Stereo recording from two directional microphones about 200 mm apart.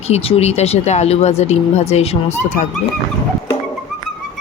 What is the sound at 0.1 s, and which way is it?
Speech, 30° left (ahead or behind).